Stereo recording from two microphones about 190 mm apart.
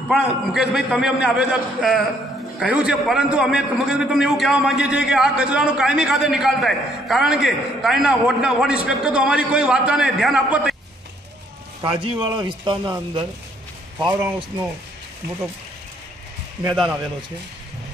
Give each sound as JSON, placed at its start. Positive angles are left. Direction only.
{"t": 0.1, "sound": "a man's voice", "side_deg": -5}
{"t": 11.8, "sound": "speech", "side_deg": -25}